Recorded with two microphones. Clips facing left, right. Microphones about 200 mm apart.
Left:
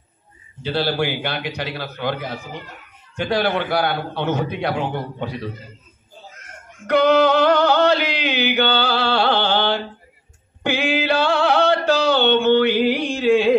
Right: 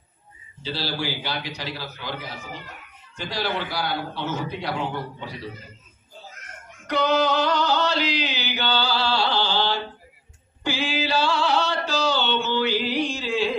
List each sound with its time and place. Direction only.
0.6 s a man's voice: 60° left (ahead or behind)
6.9 s music: 60° left (ahead or behind)